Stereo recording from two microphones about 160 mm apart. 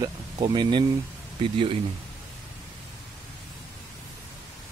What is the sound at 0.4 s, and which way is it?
Speech, 30° right (ahead or behind).